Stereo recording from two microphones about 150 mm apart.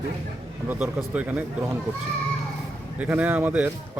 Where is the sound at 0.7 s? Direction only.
10° right (ahead or behind).